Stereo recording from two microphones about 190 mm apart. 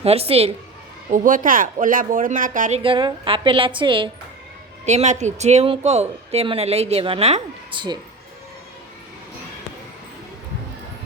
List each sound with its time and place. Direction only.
0.0 s speech: 30° right (ahead or behind)
1.1 s speech: 45° right (ahead or behind); by 4.1 s 25° right (ahead or behind)
4.9 s speech: 35° right (ahead or behind)